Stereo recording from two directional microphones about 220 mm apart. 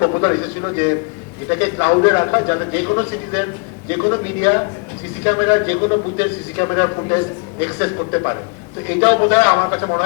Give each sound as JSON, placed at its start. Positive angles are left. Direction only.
{"t": 0.0, "sound": "a man's voice", "side_deg": 20}